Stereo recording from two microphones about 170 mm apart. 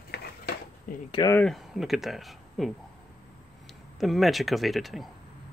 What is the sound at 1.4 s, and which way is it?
Speech, centre (ahead or behind).